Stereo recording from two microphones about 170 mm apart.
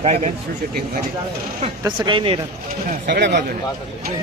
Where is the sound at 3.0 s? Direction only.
75° right (ahead or behind).